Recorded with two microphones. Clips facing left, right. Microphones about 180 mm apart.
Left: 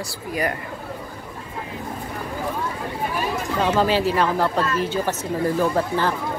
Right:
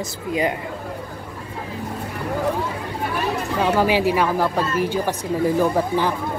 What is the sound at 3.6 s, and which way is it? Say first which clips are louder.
Speech: right 1 dB; 10° right (ahead or behind).